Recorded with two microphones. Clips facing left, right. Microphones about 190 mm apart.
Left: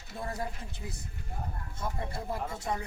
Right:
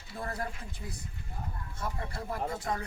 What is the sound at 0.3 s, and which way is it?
Speech, 20° left (ahead or behind).